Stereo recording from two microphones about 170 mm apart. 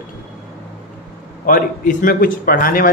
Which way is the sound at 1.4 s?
50° left (ahead or behind).